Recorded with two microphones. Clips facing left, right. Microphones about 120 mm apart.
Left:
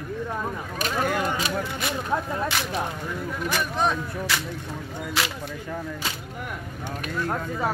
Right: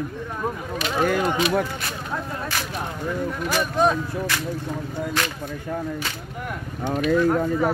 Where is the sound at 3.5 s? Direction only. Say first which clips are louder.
Right 5 dB; centre (ahead or behind).